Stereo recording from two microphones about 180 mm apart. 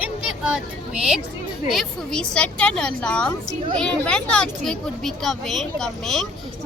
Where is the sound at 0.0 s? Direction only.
5° right (ahead or behind).